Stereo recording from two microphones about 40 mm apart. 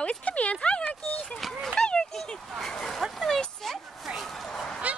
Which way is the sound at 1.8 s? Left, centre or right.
Centre.